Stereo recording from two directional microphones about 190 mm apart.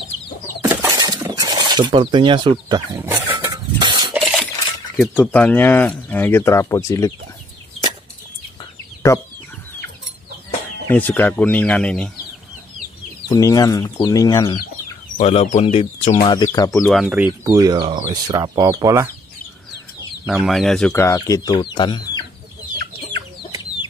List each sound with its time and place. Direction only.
0.7 s shatter: 15° right (ahead or behind)
3.3 s a sound: 20° right (ahead or behind)
4.1 s a sound: centre (ahead or behind)
4.9 s speech: 5° left (ahead or behind)
9.1 s speech: 15° left (ahead or behind)
10.9 s speech: 10° left (ahead or behind)
13.3 s speech: 20° left (ahead or behind)
15.1 s speech: 35° left (ahead or behind); by 16.8 s 15° left (ahead or behind)
16.8 s speech: 5° right (ahead or behind)
20.2 s speech: centre (ahead or behind)
20.9 s speech: 15° left (ahead or behind)